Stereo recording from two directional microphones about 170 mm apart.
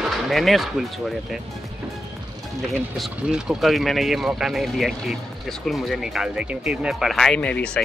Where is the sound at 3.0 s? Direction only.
5° right (ahead or behind).